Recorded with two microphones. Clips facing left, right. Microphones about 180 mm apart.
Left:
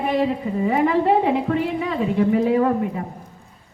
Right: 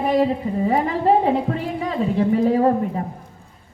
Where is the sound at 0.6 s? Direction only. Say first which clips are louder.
Left 1 dB; 35° right (ahead or behind).